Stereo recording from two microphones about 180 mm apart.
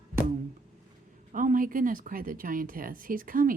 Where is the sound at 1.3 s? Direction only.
50° right (ahead or behind).